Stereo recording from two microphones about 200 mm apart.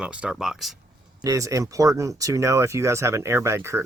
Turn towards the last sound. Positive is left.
turn(degrees=-15)  # may be behind; listen again after turning